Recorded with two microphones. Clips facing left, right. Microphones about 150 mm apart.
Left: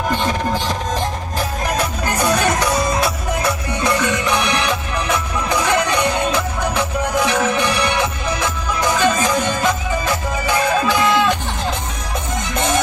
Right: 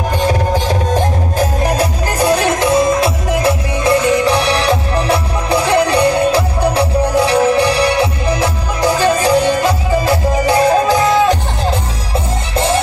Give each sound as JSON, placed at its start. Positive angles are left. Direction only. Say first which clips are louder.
{"t": 0.1, "sound": "music", "louder": "right 7 dB", "side_deg": -45}